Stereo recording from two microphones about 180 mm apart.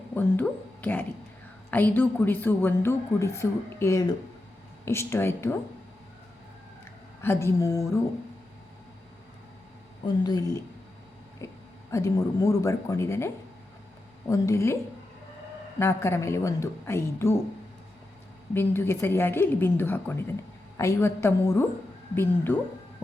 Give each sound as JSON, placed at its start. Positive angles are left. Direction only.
{"t": 0.1, "sound": "a woman's voice", "side_deg": 10}
{"t": 7.2, "sound": "a woman's voice", "side_deg": 15}
{"t": 10.2, "sound": "speech", "side_deg": 20}
{"t": 11.9, "sound": "a woman's voice", "side_deg": 15}
{"t": 15.8, "sound": "a woman's voice", "side_deg": 15}
{"t": 18.5, "sound": "a woman's voice", "side_deg": 10}